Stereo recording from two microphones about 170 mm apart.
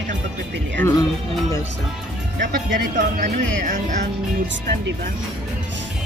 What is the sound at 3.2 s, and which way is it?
Speech, 50° right (ahead or behind).